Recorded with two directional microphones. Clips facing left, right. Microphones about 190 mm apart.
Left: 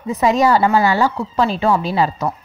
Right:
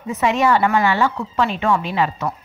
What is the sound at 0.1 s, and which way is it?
A woman's voice, 35° left (ahead or behind).